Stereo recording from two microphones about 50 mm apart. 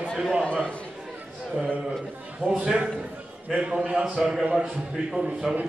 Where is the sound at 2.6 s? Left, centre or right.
Centre.